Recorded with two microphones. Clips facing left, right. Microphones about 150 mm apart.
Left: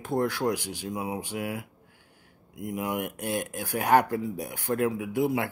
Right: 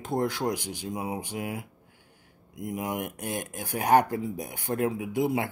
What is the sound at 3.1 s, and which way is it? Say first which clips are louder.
Speech: left 3 dB; 20° right (ahead or behind).